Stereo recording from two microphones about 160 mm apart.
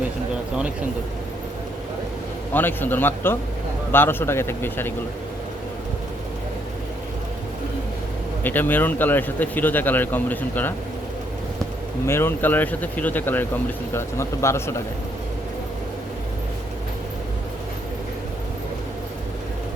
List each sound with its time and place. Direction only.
2.5 s speech: 10° left (ahead or behind)
8.4 s speech: 10° left (ahead or behind)
12.0 s speech: 15° left (ahead or behind)